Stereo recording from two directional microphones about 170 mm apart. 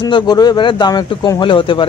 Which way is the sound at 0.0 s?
25° left (ahead or behind).